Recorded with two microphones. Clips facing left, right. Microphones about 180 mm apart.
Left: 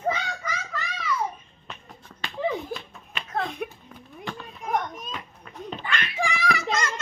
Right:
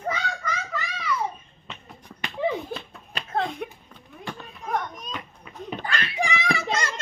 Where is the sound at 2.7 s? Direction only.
35° right (ahead or behind).